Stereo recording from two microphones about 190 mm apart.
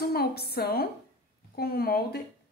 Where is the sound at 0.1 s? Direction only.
55° left (ahead or behind).